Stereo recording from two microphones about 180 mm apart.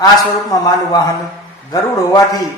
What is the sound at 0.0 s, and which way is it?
Speech, 20° left (ahead or behind).